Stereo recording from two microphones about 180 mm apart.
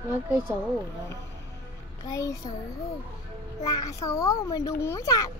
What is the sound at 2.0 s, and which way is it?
Speech, 20° left (ahead or behind).